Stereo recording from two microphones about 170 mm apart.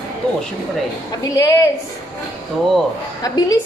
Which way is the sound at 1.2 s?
20° left (ahead or behind).